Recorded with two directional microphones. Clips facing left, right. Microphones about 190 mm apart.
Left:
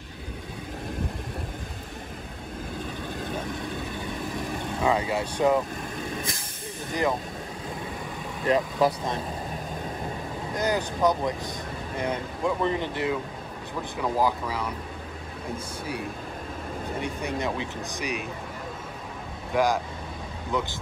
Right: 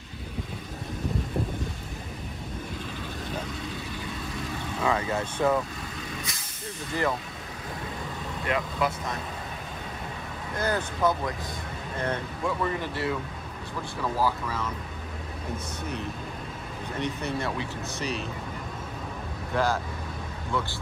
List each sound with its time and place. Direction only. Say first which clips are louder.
4.8 s speech: left 2 dB; 15° left (ahead or behind)
6.9 s speech: left 2 dB; 15° left (ahead or behind)
8.5 s speech: left 6 dB; 35° left (ahead or behind)
10.5 s vehicle: left 2 dB; 15° left (ahead or behind)
11.0 s speech: left 3 dB; 15° left (ahead or behind)
17.0 s speech: right 1 dB; 15° left (ahead or behind)
19.5 s speech: left 3 dB; 15° left (ahead or behind)